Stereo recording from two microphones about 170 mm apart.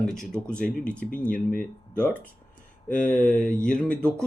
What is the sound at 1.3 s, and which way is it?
Speech, 55° left (ahead or behind).